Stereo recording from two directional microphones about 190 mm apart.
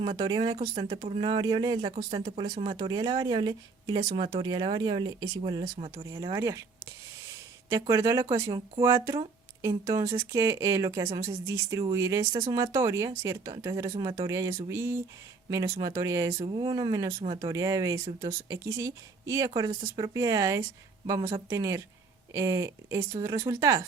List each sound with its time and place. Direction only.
0.0 s speech: 25° right (ahead or behind)
7.7 s speech: 15° right (ahead or behind)
8.4 s speech: 25° right (ahead or behind)
8.8 s speech: 15° right (ahead or behind)